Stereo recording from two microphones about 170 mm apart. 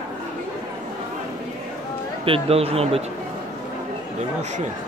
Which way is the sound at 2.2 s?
35° right (ahead or behind).